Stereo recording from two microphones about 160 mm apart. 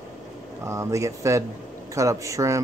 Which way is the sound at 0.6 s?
20° right (ahead or behind).